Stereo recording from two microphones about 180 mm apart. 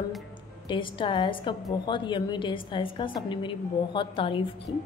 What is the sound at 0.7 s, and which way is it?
A woman's voice, 25° left (ahead or behind).